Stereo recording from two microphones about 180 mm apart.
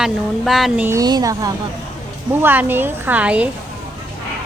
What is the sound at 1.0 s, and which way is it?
Speech, 20° right (ahead or behind).